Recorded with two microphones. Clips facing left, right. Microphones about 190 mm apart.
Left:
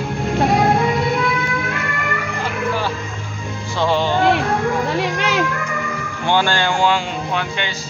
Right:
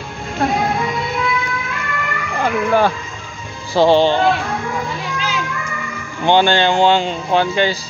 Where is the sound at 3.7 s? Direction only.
30° right (ahead or behind).